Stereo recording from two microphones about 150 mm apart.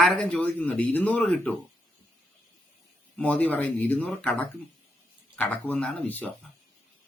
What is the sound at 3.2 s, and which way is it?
Speech, 10° left (ahead or behind).